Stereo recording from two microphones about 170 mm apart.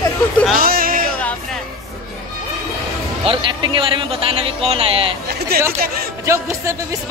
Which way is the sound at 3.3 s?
30° right (ahead or behind).